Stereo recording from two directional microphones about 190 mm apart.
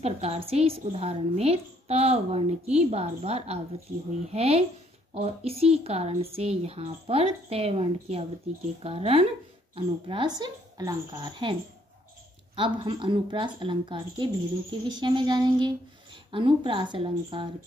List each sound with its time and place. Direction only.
0.0 s a woman's voice: 30° right (ahead or behind)
12.5 s a woman's voice: 25° right (ahead or behind)